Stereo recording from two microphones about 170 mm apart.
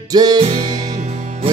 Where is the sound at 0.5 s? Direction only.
45° right (ahead or behind).